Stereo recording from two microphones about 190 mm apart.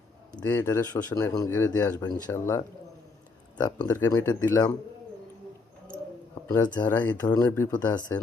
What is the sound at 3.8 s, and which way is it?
Speech, 15° left (ahead or behind).